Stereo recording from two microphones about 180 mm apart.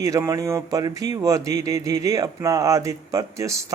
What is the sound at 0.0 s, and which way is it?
Speech, 15° right (ahead or behind).